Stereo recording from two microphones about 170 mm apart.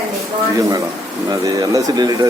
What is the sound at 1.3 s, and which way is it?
Speech, 20° right (ahead or behind).